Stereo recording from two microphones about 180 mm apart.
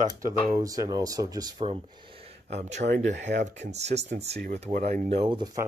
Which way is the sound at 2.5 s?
35° right (ahead or behind).